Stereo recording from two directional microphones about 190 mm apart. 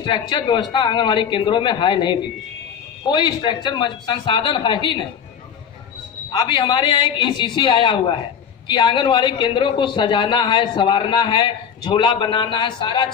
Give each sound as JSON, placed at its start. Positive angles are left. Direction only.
{"t": 0.0, "sound": "a man's voice", "side_deg": 25}
{"t": 6.3, "sound": "a man's voice", "side_deg": 25}